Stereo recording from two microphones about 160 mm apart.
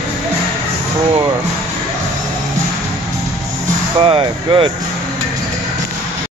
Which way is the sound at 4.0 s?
35° right (ahead or behind).